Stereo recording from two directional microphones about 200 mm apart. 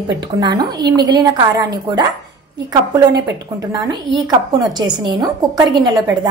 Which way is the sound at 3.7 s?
20° right (ahead or behind).